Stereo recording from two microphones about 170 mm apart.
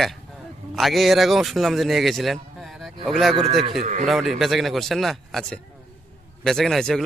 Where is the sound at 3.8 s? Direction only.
45° right (ahead or behind).